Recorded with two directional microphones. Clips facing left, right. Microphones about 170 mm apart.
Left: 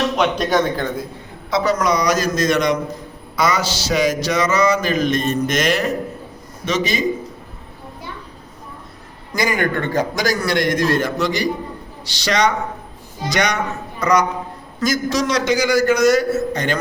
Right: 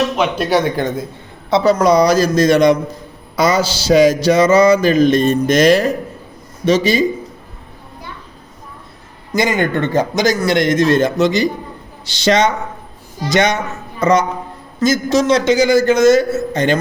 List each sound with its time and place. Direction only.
0.2 s speech: 5° right (ahead or behind)
1.5 s mantra: 30° right (ahead or behind)
9.3 s a man's voice: 25° right (ahead or behind)